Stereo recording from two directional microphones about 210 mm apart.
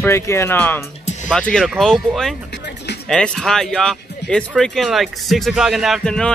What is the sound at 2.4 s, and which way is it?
Music, 55° left (ahead or behind).